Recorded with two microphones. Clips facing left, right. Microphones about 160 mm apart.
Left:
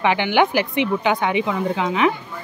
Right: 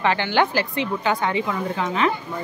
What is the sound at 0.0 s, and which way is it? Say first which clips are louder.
Speech: left 3 dB; 15° left (ahead or behind).